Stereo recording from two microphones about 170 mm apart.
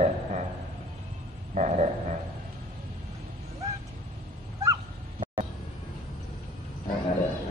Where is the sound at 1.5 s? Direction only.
45° right (ahead or behind).